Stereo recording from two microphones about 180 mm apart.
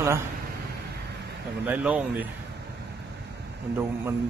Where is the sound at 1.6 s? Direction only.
5° right (ahead or behind).